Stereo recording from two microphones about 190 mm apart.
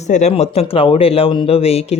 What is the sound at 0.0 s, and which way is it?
Speech, 35° left (ahead or behind).